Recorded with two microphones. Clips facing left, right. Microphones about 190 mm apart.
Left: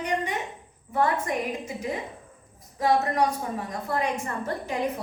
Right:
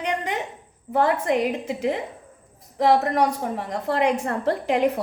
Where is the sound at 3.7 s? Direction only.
75° right (ahead or behind).